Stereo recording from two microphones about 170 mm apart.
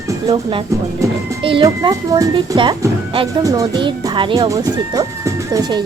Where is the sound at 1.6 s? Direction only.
20° right (ahead or behind).